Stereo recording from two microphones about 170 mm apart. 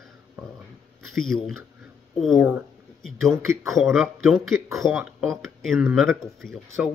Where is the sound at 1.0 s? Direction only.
Centre (ahead or behind).